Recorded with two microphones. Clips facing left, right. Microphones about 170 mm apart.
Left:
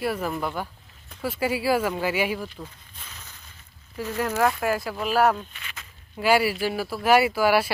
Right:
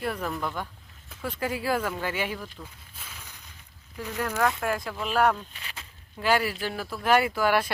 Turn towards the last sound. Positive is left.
turn(degrees=10)  # may be behind; listen again after turning